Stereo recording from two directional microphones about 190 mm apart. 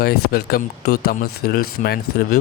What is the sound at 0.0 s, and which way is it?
Speech, 55° left (ahead or behind).